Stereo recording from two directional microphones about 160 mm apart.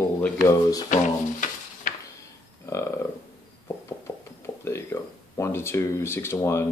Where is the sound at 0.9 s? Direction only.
55° left (ahead or behind).